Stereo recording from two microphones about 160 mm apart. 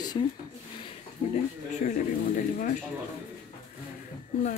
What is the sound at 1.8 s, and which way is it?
Speech, 60° left (ahead or behind).